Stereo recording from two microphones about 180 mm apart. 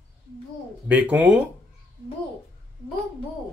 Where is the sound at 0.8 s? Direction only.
10° right (ahead or behind).